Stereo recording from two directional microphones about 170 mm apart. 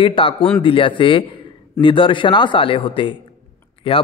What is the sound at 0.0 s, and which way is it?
A man's voice, 30° left (ahead or behind).